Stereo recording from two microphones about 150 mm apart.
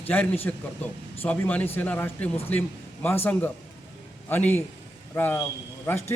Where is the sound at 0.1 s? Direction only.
10° left (ahead or behind).